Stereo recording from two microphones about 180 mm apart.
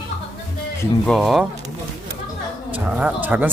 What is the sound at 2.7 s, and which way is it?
Speech, 10° right (ahead or behind).